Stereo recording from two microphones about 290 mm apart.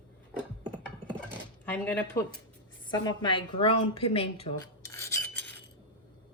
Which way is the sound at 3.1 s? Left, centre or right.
Centre.